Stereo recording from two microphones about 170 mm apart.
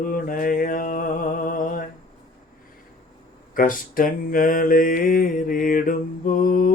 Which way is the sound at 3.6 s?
55° left (ahead or behind).